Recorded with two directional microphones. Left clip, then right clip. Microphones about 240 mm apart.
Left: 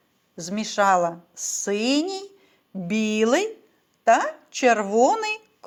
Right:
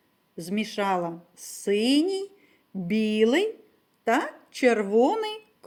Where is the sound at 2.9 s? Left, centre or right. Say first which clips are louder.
Left 1 dB; left.